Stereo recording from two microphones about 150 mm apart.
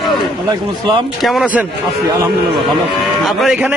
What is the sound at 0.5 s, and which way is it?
Speech, 30° right (ahead or behind).